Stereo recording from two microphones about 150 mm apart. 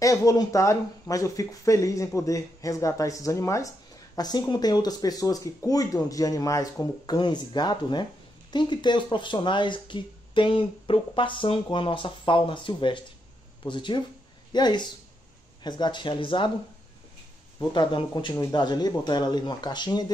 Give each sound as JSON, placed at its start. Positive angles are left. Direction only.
{"t": 0.0, "sound": "speech", "side_deg": 20}
{"t": 17.6, "sound": "speech", "side_deg": 30}